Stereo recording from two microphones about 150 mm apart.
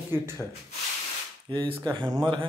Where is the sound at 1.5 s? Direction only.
30° right (ahead or behind).